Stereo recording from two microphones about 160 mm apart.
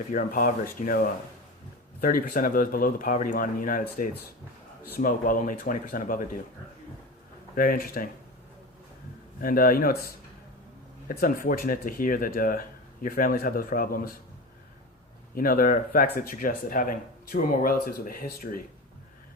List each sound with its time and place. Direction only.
0.1 s speech: 60° left (ahead or behind)
7.5 s speech: 60° left (ahead or behind)
9.4 s speech: 65° left (ahead or behind)
11.1 s speech: 60° left (ahead or behind)
15.4 s speech: 60° left (ahead or behind)